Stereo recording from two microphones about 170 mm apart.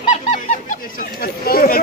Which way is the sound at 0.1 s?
45° left (ahead or behind).